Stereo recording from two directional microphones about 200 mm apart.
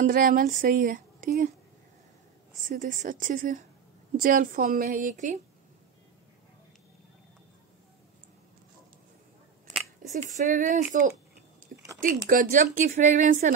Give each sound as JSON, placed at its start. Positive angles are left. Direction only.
{"t": 0.0, "sound": "speech", "side_deg": -45}
{"t": 2.6, "sound": "speech", "side_deg": -40}
{"t": 10.0, "sound": "a sound", "side_deg": -40}
{"t": 10.3, "sound": "speech", "side_deg": -40}
{"t": 12.0, "sound": "speech", "side_deg": -45}